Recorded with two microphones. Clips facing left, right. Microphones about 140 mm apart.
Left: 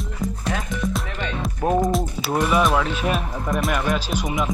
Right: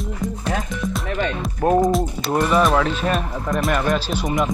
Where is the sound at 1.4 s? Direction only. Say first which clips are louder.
Right 3 dB; centre (ahead or behind).